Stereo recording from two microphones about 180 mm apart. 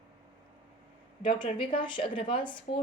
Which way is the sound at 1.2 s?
25° left (ahead or behind).